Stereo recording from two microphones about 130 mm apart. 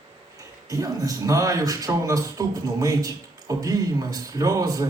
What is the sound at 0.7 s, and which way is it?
A man's voice, 25° right (ahead or behind).